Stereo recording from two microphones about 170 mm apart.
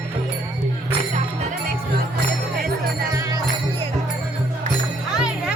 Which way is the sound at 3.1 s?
20° right (ahead or behind).